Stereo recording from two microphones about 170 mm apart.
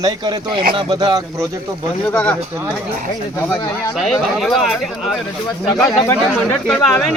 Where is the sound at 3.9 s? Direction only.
Centre (ahead or behind).